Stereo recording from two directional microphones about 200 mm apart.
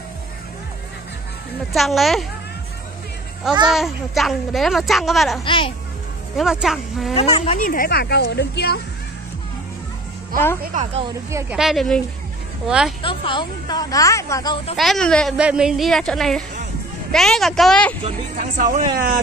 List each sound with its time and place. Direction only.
1.7 s a woman's voice: centre (ahead or behind)
3.6 s a woman's voice: centre (ahead or behind)
5.4 s a woman's voice: 25° left (ahead or behind)
6.3 s a woman's voice: centre (ahead or behind)
7.2 s speech: 30° left (ahead or behind); by 8.7 s 55° left (ahead or behind)
10.6 s speech: 40° right (ahead or behind)
11.5 s a woman's voice: centre (ahead or behind)
13.0 s a woman's voice: 25° left (ahead or behind)
14.8 s a woman's voice: centre (ahead or behind)
18.0 s speech: 40° right (ahead or behind)